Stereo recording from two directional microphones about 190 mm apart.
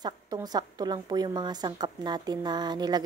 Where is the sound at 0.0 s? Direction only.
20° right (ahead or behind).